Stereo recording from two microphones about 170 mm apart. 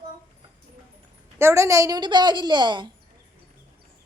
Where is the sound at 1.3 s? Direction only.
15° right (ahead or behind).